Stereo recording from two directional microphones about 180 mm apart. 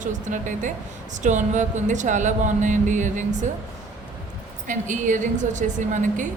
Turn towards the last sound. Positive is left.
turn(degrees=-45)  # may be behind; listen again after turning